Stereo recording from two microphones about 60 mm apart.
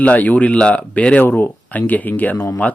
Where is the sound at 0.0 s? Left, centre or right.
Left.